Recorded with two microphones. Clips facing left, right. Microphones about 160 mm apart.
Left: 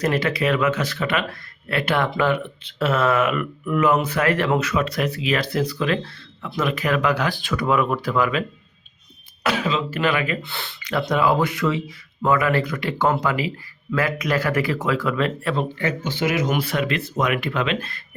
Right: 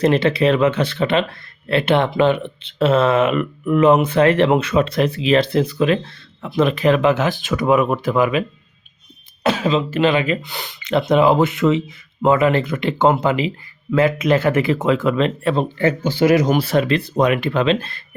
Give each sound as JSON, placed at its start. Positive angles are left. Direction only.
{"t": 0.0, "sound": "speech", "side_deg": -25}